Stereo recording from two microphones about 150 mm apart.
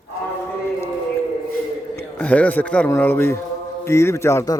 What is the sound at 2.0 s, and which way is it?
A man's voice, 10° left (ahead or behind).